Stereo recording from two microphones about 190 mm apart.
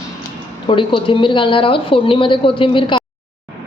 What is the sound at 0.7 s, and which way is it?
A woman's voice, 25° left (ahead or behind).